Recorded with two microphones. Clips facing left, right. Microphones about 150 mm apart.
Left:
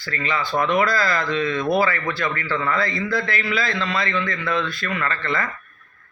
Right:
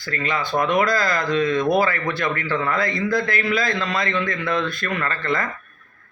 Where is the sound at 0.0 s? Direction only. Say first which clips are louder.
Right 1 dB; 45° right (ahead or behind).